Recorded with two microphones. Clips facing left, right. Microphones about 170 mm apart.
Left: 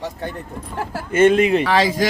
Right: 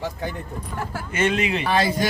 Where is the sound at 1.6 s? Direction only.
90° left.